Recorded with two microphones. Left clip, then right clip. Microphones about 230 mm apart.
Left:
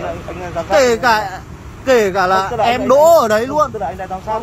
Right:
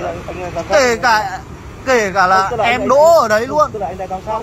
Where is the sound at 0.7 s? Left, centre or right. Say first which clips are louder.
Even; left.